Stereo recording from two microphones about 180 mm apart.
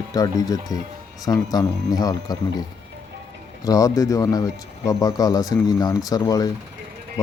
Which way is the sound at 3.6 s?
20° left (ahead or behind).